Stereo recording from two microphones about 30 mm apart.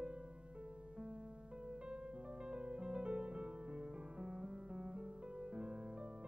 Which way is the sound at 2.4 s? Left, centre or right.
Right.